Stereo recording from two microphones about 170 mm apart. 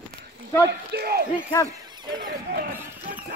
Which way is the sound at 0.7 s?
70° right (ahead or behind).